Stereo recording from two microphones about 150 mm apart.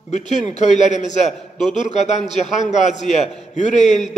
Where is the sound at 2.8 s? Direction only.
50° left (ahead or behind).